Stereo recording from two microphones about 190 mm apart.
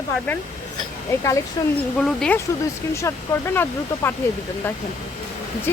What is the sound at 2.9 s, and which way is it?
Speech, 15° left (ahead or behind).